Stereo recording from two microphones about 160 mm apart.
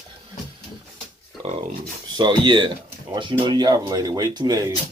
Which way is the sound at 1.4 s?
40° right (ahead or behind).